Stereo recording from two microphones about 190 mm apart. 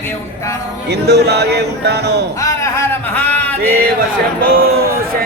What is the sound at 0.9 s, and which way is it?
Speech, 60° right (ahead or behind).